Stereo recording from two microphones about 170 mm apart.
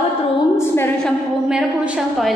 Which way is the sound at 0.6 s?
15° left (ahead or behind).